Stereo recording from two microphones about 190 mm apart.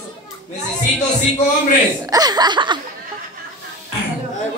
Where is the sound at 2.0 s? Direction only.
20° right (ahead or behind).